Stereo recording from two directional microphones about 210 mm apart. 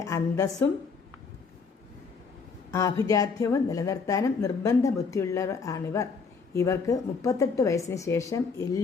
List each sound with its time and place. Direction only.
0.0 s a woman's voice: 15° left (ahead or behind)
2.7 s a woman's voice: 15° left (ahead or behind)